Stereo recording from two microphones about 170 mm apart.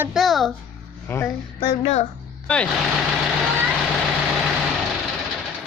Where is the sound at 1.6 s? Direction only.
35° left (ahead or behind).